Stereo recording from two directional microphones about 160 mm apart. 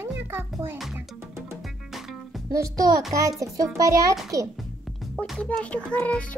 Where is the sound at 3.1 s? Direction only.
20° right (ahead or behind).